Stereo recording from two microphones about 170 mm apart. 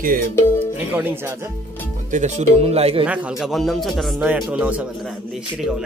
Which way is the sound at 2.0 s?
45° right (ahead or behind).